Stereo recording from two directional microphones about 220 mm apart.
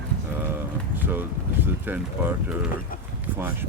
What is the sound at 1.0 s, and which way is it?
Speech, 10° right (ahead or behind).